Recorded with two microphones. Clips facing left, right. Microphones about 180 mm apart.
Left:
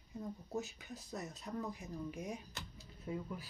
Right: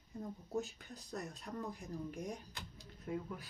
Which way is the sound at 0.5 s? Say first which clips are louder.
Right 3 dB; 5° left (ahead or behind).